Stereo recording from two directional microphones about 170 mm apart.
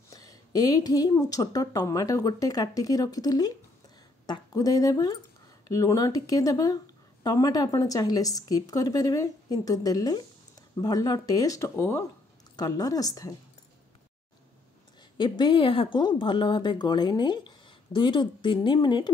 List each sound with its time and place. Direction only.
0.1 s speech: 20° left (ahead or behind)
15.1 s speech: 25° left (ahead or behind)